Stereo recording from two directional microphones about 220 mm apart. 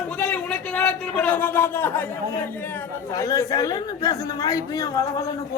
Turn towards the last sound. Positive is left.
turn(degrees=15)  # may be behind; listen again after turning